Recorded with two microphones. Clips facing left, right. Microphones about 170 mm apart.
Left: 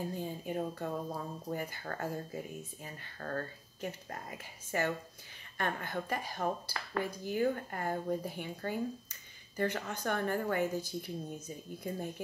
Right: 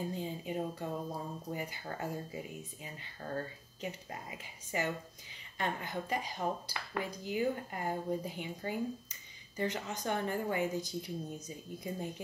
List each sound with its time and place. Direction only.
0.1 s speech: 15° right (ahead or behind)